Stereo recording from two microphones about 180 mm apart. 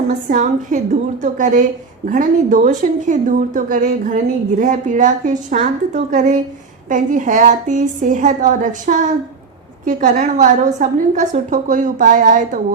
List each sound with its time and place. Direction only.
0.1 s a woman's voice: 45° right (ahead or behind)